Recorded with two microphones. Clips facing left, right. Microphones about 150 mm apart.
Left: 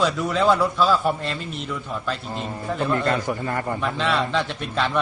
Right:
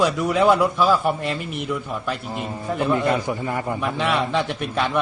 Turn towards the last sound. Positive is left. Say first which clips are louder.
# right 1 dB
turn(degrees=-15)  # may be behind; listen again after turning